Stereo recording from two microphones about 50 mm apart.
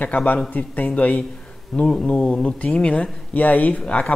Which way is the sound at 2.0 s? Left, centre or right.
Left.